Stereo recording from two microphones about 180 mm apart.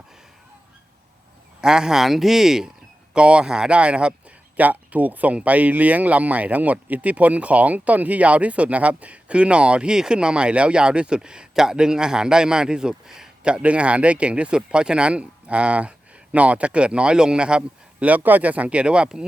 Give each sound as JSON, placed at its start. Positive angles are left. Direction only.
{"t": 1.6, "sound": "speech", "side_deg": -5}